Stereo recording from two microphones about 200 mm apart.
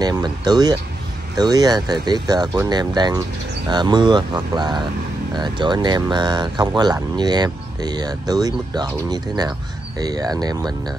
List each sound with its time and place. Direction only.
0.0 s speech: 20° right (ahead or behind)